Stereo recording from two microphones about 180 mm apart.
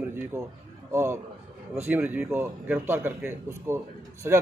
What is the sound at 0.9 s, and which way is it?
Speech, 15° right (ahead or behind).